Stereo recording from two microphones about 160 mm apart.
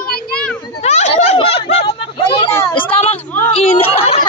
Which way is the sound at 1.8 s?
35° left (ahead or behind).